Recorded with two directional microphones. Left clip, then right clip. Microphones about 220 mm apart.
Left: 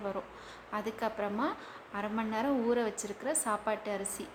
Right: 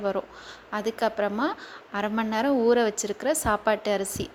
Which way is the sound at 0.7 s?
25° right (ahead or behind).